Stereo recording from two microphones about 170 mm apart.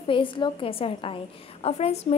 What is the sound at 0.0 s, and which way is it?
A woman's voice, 30° left (ahead or behind).